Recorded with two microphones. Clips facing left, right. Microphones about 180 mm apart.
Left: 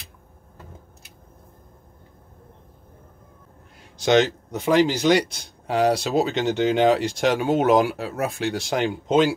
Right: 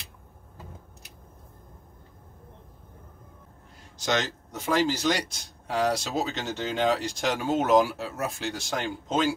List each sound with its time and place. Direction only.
4.0 s speech: 65° left (ahead or behind)